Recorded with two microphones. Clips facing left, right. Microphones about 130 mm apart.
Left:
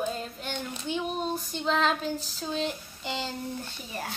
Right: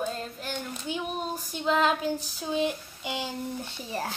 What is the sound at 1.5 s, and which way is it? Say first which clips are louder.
Child singing: right 3 dB; 10° right (ahead or behind).